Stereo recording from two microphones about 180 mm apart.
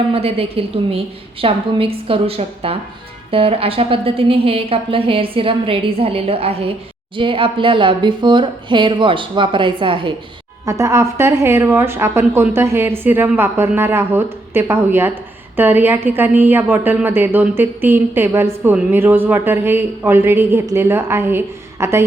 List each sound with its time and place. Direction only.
0.1 s a woman's voice: 35° right (ahead or behind)
10.7 s a woman's voice: 15° right (ahead or behind)